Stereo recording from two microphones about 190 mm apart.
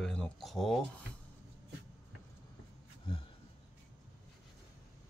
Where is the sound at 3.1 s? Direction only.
25° left (ahead or behind).